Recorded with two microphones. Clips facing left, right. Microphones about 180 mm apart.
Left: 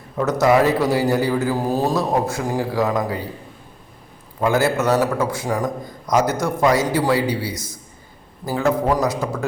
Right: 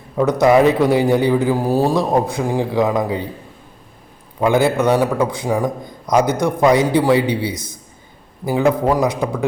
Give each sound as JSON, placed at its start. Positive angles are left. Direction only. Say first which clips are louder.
{"t": 0.2, "sound": "a man's voice", "louder": "right 4 dB", "side_deg": -15}
{"t": 4.4, "sound": "a man's voice", "louder": "right 3 dB", "side_deg": -20}
{"t": 7.5, "sound": "a man's voice", "louder": "right 2 dB", "side_deg": 0}
{"t": 8.4, "sound": "a man's voice", "louder": "right 3 dB", "side_deg": -15}